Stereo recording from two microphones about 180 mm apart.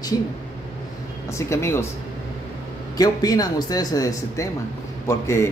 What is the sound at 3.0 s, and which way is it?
Speech, 20° left (ahead or behind).